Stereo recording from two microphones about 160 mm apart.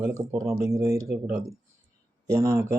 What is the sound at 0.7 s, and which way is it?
Speech, 20° right (ahead or behind).